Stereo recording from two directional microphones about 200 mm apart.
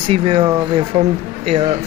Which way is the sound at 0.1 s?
25° right (ahead or behind).